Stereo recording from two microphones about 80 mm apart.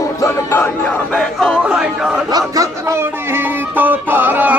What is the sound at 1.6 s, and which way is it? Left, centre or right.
Speech, centre.